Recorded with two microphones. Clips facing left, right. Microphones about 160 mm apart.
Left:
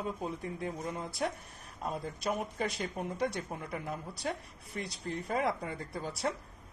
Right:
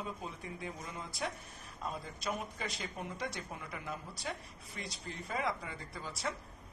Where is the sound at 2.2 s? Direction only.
50° left (ahead or behind).